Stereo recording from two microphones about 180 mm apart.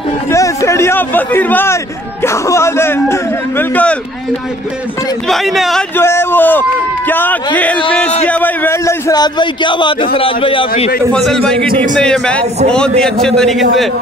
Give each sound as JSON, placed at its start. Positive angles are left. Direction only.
{"t": 0.3, "sound": "a man's voice", "side_deg": 15}
{"t": 5.3, "sound": "a man's voice", "side_deg": 0}
{"t": 5.9, "sound": "a man's voice", "side_deg": 15}
{"t": 11.1, "sound": "a man's voice", "side_deg": 0}